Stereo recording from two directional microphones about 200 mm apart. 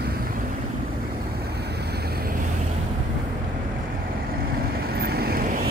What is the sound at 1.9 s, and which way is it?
Vehicle, 50° right (ahead or behind).